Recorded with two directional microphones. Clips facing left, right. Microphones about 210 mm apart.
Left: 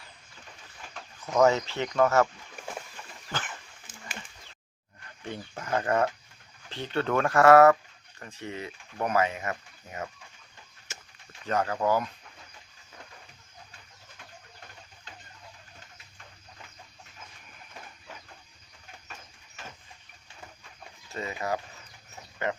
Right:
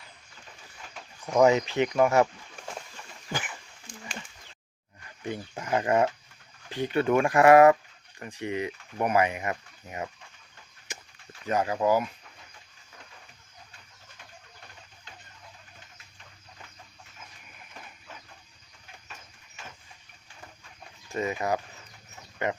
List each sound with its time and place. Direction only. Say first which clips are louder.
1.2 s speech: right 2 dB; 15° right (ahead or behind)
3.3 s speech: right 2 dB; 10° right (ahead or behind)
3.9 s a sound: right 7 dB; 5° left (ahead or behind)
5.3 s speech: right 2 dB; 10° right (ahead or behind)
11.4 s speech: right 2 dB; 10° right (ahead or behind)
21.1 s speech: right 4 dB; 20° right (ahead or behind)